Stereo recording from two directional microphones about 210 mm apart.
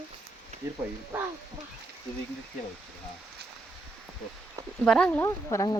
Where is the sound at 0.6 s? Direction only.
15° right (ahead or behind).